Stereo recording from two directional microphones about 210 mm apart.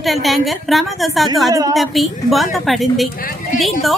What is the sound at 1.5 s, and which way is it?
Speech, 15° right (ahead or behind).